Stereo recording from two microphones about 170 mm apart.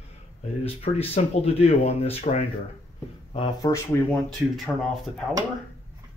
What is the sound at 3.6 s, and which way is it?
Speech, 20° left (ahead or behind).